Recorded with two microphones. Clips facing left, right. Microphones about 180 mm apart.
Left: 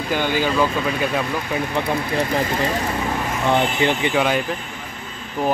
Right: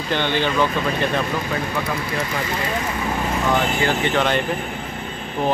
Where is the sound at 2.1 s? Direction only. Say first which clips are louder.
Left 4 dB; 35° left (ahead or behind).